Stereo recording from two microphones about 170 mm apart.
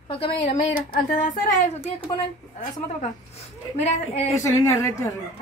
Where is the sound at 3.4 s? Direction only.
40° left (ahead or behind).